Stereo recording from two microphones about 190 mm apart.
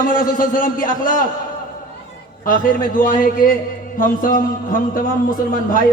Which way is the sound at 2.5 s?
45° left (ahead or behind).